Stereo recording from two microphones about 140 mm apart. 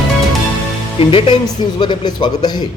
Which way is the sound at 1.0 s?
40° left (ahead or behind).